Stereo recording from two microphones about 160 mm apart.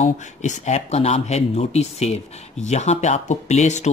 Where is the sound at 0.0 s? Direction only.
45° left (ahead or behind).